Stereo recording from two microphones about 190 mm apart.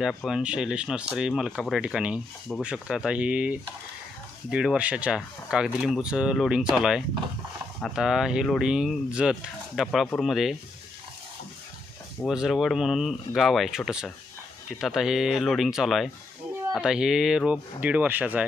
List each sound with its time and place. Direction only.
0.0 s speech: centre (ahead or behind)
12.2 s speech: centre (ahead or behind)